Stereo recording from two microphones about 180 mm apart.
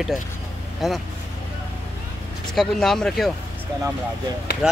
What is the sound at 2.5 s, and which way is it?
Speech, centre (ahead or behind).